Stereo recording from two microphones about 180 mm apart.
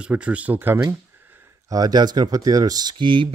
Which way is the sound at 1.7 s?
20° right (ahead or behind).